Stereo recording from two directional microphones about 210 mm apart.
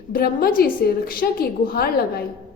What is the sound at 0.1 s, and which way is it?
A woman's voice, 45° left (ahead or behind).